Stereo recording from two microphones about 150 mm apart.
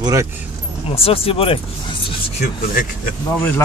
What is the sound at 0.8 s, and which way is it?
Speech, 40° left (ahead or behind).